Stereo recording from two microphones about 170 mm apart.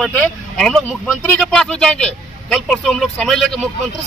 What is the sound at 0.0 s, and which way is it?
Speech, 5° left (ahead or behind).